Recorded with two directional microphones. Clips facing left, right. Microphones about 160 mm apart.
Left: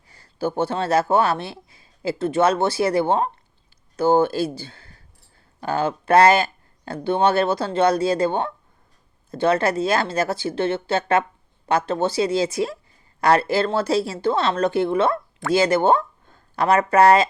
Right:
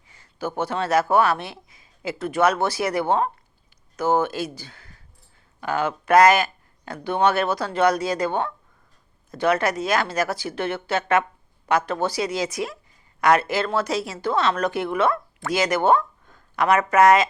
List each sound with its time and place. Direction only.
0.1 s speech: 35° left (ahead or behind)